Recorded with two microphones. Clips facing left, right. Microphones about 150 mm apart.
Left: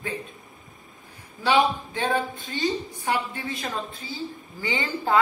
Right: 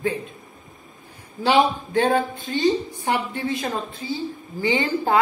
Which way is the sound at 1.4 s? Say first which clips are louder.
Right 3 dB; 30° right (ahead or behind).